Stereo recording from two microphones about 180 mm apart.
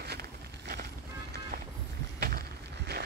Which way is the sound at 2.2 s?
55° right (ahead or behind).